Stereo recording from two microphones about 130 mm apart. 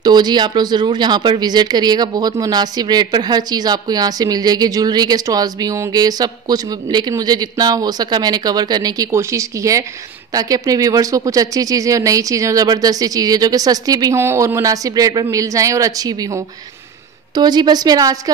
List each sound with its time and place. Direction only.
0.0 s speech: 35° right (ahead or behind)
17.4 s speech: 35° right (ahead or behind)